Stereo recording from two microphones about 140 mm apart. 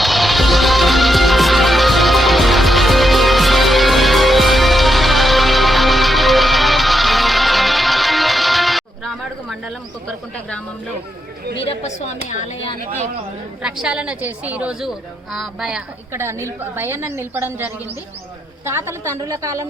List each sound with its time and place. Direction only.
0.0 s music: centre (ahead or behind)
11.6 s speech: 55° left (ahead or behind)
13.6 s a woman's voice: 5° right (ahead or behind)
16.1 s a woman's voice: 20° right (ahead or behind)